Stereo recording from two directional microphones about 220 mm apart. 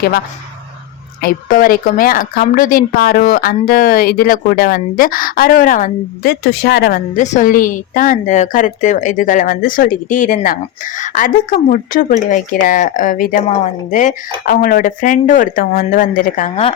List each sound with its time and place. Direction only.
1.2 s a woman's voice: 40° left (ahead or behind)
7.2 s a woman's voice: 35° left (ahead or behind)